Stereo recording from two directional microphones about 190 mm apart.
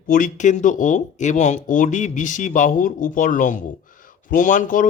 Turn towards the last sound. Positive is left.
turn(degrees=45)  # may be behind; listen again after turning